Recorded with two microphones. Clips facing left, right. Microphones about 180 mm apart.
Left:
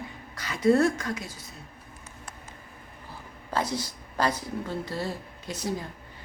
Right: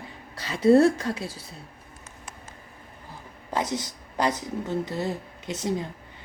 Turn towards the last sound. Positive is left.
turn(degrees=-20)  # may be behind; listen again after turning